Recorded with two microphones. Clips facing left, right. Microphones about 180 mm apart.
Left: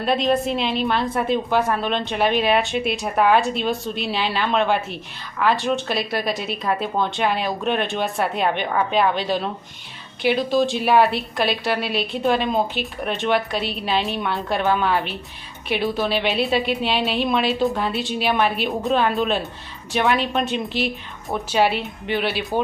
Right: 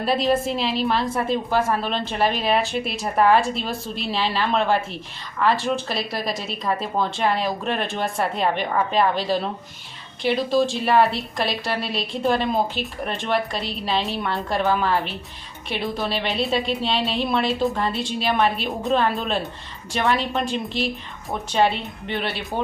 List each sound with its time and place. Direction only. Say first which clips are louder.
0.0 s a woman's voice: left 1 dB; centre (ahead or behind)